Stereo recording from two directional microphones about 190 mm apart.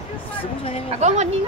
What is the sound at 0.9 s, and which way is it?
Speech, 35° right (ahead or behind).